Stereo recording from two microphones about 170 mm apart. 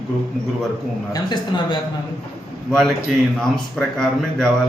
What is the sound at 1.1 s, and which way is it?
Speech, 25° left (ahead or behind).